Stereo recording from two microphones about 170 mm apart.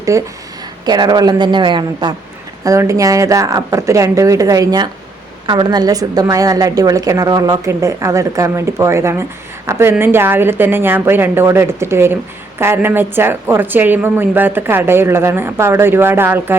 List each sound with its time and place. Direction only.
0.1 s a woman's voice: 20° right (ahead or behind)